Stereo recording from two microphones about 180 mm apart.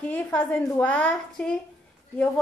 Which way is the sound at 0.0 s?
10° left (ahead or behind).